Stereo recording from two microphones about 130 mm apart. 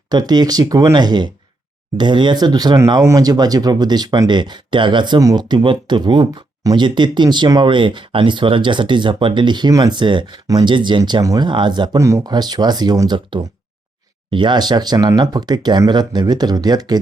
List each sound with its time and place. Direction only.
0.1 s speech: 30° right (ahead or behind)
11.9 s speech: 25° right (ahead or behind)